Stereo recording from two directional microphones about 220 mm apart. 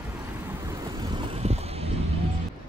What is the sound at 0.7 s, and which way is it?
Vehicle, 15° right (ahead or behind).